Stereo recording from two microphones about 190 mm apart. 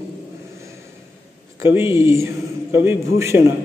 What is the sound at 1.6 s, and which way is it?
A man's voice, 15° right (ahead or behind).